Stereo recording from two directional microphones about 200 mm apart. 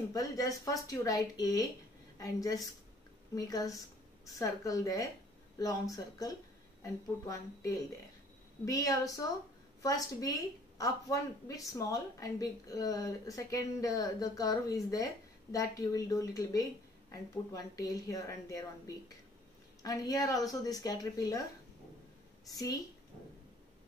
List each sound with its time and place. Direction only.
0.1 s speech: 15° left (ahead or behind)
19.8 s speech: 15° left (ahead or behind)
22.5 s a woman's voice: 20° left (ahead or behind)